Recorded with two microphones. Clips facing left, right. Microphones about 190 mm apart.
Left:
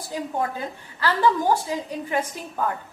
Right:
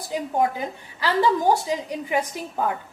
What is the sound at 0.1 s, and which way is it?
Speech, 15° right (ahead or behind).